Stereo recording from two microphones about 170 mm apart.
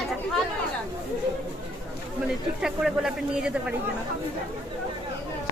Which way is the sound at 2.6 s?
5° right (ahead or behind).